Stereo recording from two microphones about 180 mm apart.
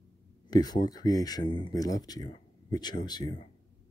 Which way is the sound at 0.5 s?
20° left (ahead or behind).